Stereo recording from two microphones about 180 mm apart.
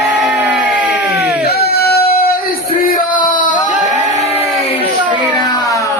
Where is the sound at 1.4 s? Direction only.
60° left (ahead or behind); by 4.7 s 35° left (ahead or behind).